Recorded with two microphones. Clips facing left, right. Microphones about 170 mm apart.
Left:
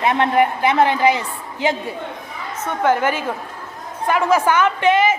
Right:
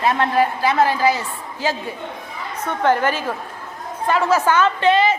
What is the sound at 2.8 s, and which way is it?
A woman's voice, 10° left (ahead or behind).